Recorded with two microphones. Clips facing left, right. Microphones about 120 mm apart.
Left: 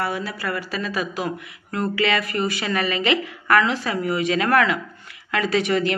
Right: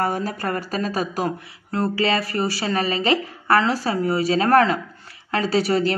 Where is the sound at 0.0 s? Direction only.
45° right (ahead or behind).